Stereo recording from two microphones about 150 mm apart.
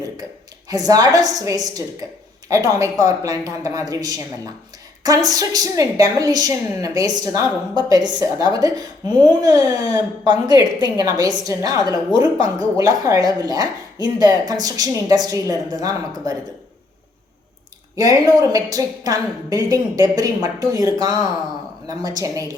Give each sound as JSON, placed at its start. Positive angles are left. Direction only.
{"t": 0.7, "sound": "speech", "side_deg": -25}
{"t": 17.9, "sound": "speech", "side_deg": -25}